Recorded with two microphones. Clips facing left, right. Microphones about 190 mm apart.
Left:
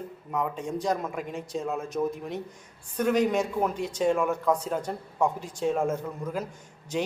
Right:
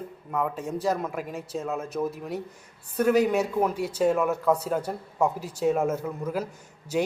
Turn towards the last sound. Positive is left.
turn(degrees=-5)  # may be behind; listen again after turning